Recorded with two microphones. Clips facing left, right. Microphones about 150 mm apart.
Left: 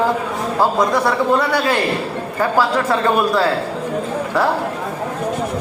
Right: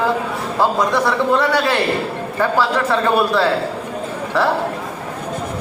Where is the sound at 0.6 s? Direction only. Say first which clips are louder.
Even; 10° left (ahead or behind).